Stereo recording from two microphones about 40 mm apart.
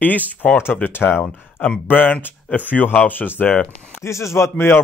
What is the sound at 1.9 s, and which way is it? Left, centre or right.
Speech, left.